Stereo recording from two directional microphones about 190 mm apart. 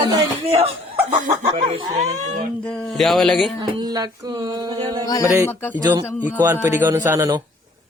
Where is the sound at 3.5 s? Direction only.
25° right (ahead or behind).